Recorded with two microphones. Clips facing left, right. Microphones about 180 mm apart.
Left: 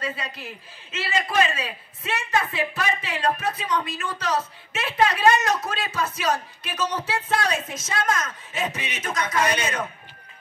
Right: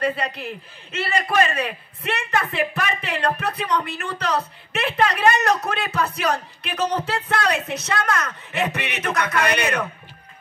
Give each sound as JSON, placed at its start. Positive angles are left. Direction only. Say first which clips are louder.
{"t": 0.0, "sound": "a man's voice", "louder": "right 8 dB", "side_deg": -60}